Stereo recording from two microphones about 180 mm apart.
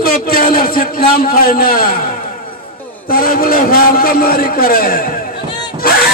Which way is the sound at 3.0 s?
55° left (ahead or behind).